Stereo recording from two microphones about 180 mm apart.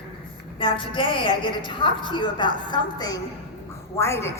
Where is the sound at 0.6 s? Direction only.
30° left (ahead or behind).